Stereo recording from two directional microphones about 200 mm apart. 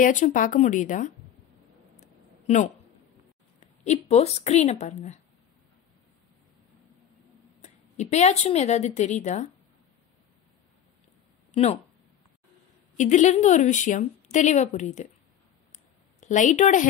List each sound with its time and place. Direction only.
0.0 s a woman's voice: 40° left (ahead or behind)
2.0 s a sound: 35° left (ahead or behind)
3.8 s a woman's voice: 35° left (ahead or behind)
7.6 s a woman's voice: 35° left (ahead or behind)
11.5 s speech: 35° left (ahead or behind)
12.9 s a woman's voice: 35° left (ahead or behind)
15.7 s a sound: 35° left (ahead or behind)